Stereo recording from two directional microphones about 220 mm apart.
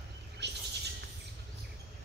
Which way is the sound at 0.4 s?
50° right (ahead or behind).